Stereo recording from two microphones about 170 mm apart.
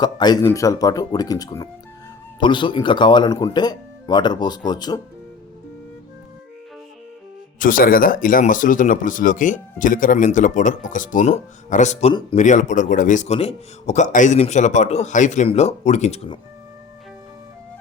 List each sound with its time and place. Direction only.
0.0 s speech: 25° left (ahead or behind)
7.6 s speech: 55° left (ahead or behind); by 16.4 s 35° left (ahead or behind)